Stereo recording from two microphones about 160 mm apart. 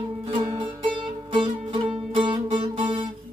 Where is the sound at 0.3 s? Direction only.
35° right (ahead or behind).